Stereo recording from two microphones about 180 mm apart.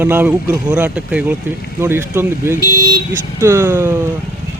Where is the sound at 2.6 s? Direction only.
65° left (ahead or behind).